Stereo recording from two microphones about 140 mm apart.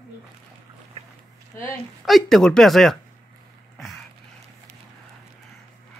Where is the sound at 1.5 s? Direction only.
15° left (ahead or behind).